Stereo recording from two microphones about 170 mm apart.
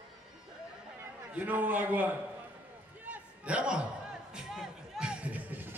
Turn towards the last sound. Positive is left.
turn(degrees=-10)  # may be behind; listen again after turning